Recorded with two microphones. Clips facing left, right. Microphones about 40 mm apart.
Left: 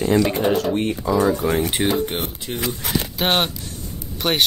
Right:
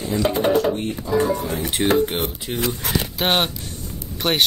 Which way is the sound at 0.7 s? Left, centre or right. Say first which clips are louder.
Left 2 dB; left.